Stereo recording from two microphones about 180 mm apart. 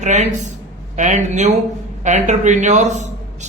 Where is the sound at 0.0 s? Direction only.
40° right (ahead or behind).